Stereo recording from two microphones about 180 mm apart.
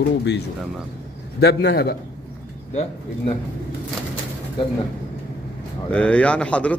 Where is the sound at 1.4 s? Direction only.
65° left (ahead or behind).